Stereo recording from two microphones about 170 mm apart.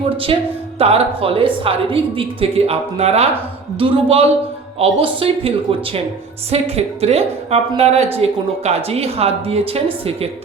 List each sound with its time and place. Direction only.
0.3 s a woman's voice: 35° right (ahead or behind)